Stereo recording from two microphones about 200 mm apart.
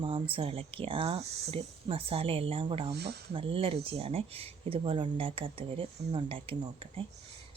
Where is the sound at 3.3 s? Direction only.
25° right (ahead or behind).